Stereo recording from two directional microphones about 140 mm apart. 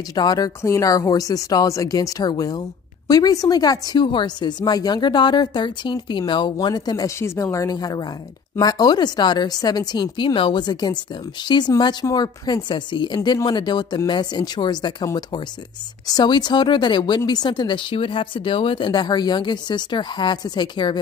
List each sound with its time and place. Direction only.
0.1 s a woman's voice: 30° left (ahead or behind)